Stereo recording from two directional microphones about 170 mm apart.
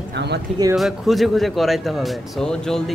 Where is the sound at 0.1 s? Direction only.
80° right.